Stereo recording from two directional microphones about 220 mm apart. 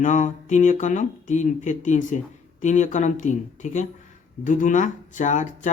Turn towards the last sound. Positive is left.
turn(degrees=35)  # may be behind; listen again after turning